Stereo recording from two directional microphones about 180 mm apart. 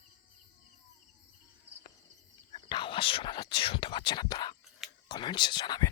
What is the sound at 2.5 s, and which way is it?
Speech, 30° left (ahead or behind).